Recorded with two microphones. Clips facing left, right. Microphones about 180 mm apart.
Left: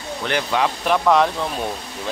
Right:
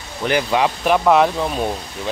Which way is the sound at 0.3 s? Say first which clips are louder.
Right 3 dB; 10° right (ahead or behind).